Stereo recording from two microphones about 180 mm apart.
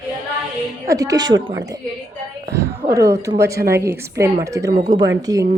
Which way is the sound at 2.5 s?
15° right (ahead or behind).